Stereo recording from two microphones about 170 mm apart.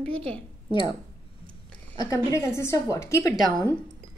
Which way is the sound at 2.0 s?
20° left (ahead or behind).